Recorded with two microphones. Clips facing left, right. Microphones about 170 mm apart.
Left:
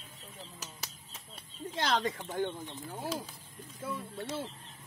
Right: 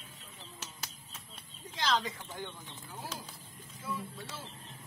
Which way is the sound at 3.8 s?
60° left (ahead or behind).